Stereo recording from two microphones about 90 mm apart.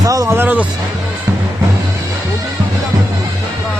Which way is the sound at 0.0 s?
40° right (ahead or behind).